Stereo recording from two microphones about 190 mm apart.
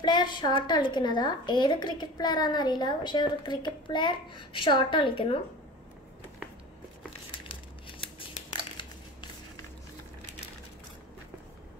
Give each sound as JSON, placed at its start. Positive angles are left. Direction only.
{"t": 0.0, "sound": "a woman's voice", "side_deg": 25}